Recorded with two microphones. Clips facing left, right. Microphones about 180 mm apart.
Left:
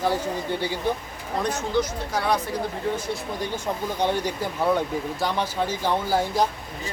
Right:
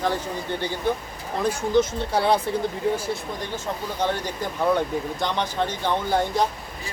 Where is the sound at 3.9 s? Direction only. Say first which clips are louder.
Left 1 dB; 15° left (ahead or behind).